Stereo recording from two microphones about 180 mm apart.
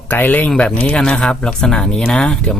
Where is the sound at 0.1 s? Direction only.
10° left (ahead or behind).